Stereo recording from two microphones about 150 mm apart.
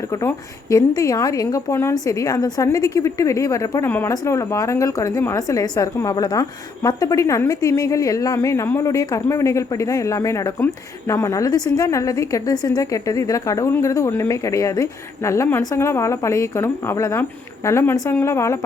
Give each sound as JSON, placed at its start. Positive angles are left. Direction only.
{"t": 0.1, "sound": "a woman's voice", "side_deg": 20}